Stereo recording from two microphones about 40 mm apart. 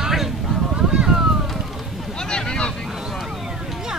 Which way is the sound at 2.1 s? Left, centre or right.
Centre.